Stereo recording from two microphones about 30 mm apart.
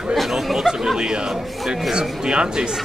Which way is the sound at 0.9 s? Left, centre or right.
Right.